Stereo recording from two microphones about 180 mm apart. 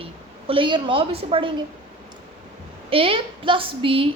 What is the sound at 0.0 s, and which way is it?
A woman's voice, 30° right (ahead or behind).